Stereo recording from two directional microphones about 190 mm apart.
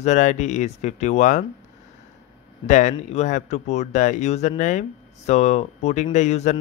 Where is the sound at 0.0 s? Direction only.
40° left (ahead or behind).